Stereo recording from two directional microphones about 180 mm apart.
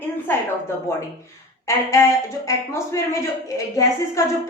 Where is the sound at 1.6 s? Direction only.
15° left (ahead or behind).